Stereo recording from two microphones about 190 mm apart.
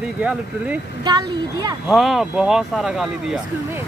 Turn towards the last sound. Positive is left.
turn(degrees=-5)  # may be behind; listen again after turning